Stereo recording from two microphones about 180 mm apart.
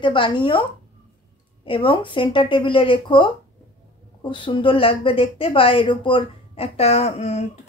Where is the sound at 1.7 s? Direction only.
30° left (ahead or behind).